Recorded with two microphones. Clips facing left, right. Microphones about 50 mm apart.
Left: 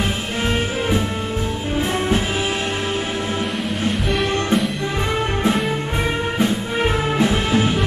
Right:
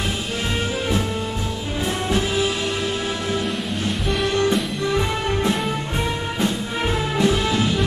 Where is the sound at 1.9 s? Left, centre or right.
Left.